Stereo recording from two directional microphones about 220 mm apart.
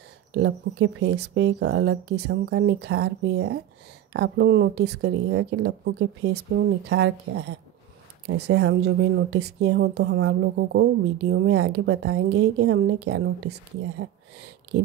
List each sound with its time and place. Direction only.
0.3 s a woman's voice: 50° right (ahead or behind)